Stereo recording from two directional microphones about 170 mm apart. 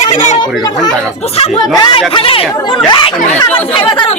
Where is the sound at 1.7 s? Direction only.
25° left (ahead or behind).